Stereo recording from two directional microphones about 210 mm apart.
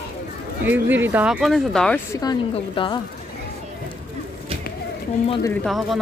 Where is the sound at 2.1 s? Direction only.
20° left (ahead or behind).